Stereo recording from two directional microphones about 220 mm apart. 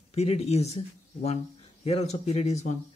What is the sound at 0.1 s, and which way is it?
Speech, 30° left (ahead or behind).